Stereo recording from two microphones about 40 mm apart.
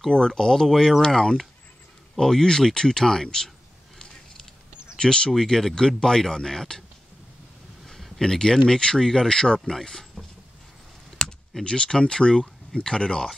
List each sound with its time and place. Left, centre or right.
0.1 s speech: centre
4.9 s speech: centre
7.8 s speech: centre
11.2 s computer keyboard: centre
11.6 s speech: centre